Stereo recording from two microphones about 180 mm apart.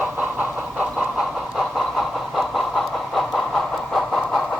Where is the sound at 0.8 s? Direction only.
Centre (ahead or behind).